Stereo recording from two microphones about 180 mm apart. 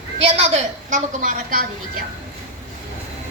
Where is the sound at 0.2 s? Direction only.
35° right (ahead or behind); by 2.0 s 50° right (ahead or behind).